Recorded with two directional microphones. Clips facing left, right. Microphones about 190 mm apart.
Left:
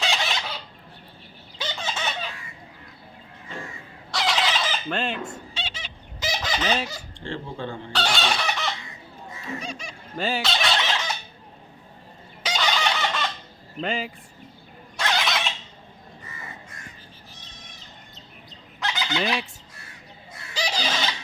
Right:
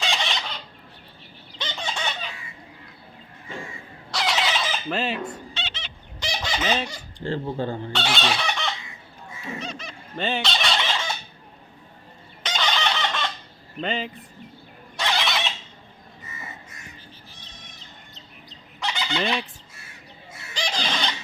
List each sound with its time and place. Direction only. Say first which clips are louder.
0.0 s chicken: left 1 dB; centre (ahead or behind)
1.5 s fowl: even; 5° left (ahead or behind)
4.1 s fowl: even; centre (ahead or behind)
5.5 s chicken: even; 10° left (ahead or behind)
6.6 s speech: right 2 dB; centre (ahead or behind)
7.3 s speech: right 5 dB; 40° right (ahead or behind)
7.9 s chicken: left 2 dB; centre (ahead or behind)
9.6 s fowl: right 1 dB; 10° left (ahead or behind)
12.4 s chicken: left 1 dB; 5° left (ahead or behind)
13.8 s speech: even; 5° left (ahead or behind)
14.9 s neigh: even; centre (ahead or behind)
18.8 s fowl: even; centre (ahead or behind)
20.5 s a sound: left 1 dB; 5° left (ahead or behind)